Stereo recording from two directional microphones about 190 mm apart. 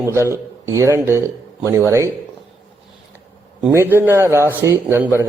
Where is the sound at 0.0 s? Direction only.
15° right (ahead or behind).